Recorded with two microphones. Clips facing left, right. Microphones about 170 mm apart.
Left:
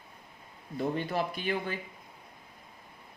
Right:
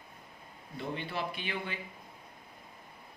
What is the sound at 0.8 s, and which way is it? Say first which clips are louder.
Speech: left 6 dB; 45° left (ahead or behind).